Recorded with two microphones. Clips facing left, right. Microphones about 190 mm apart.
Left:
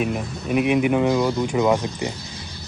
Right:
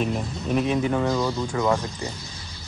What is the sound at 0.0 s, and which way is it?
Speech, 10° left (ahead or behind).